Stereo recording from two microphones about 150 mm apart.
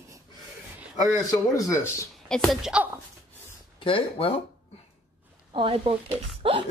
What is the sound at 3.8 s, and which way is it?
Speech, 35° left (ahead or behind).